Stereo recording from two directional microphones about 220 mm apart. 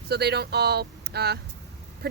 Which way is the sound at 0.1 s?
50° right (ahead or behind).